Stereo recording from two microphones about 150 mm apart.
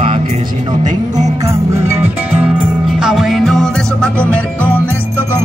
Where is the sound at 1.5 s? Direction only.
20° right (ahead or behind).